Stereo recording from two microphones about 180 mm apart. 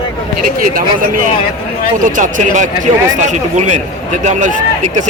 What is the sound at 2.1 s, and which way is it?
A man's voice, 45° right (ahead or behind).